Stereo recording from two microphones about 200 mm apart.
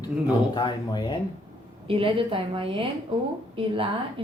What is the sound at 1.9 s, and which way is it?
A woman's voice, 25° right (ahead or behind).